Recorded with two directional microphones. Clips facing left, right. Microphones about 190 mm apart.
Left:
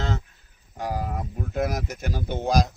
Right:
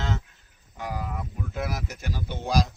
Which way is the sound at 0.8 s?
40° left (ahead or behind).